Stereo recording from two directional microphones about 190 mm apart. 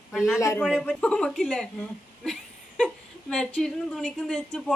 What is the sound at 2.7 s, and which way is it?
A woman's voice, centre (ahead or behind).